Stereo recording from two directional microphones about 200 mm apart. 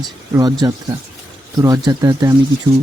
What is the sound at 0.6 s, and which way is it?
A man's voice, 15° right (ahead or behind).